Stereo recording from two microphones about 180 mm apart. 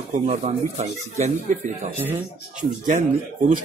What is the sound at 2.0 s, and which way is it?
Speech, 10° right (ahead or behind).